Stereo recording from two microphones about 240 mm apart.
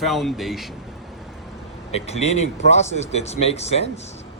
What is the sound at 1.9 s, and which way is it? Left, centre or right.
Speech, left.